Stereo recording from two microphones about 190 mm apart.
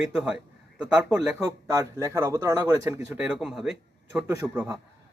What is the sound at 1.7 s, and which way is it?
A man's voice, 15° right (ahead or behind).